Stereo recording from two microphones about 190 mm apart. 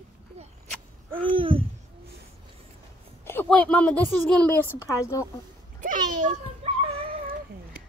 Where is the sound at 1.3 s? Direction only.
30° right (ahead or behind).